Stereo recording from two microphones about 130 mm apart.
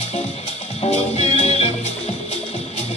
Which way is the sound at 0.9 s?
60° left (ahead or behind).